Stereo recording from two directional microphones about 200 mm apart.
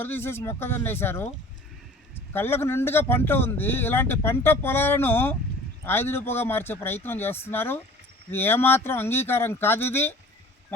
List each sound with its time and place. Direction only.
0.0 s speech: 10° left (ahead or behind)
2.3 s speech: 10° left (ahead or behind)